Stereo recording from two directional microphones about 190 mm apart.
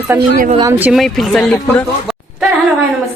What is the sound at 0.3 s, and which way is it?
Speech, 45° right (ahead or behind).